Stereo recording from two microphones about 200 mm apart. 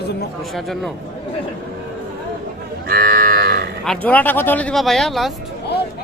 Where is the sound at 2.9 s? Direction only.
45° right (ahead or behind).